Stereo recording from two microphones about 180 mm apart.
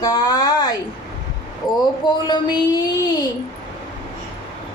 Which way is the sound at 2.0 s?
25° left (ahead or behind).